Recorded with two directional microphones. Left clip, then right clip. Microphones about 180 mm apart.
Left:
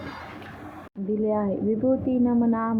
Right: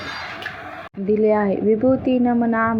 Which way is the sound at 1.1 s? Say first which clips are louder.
Right 8 dB; 20° right (ahead or behind).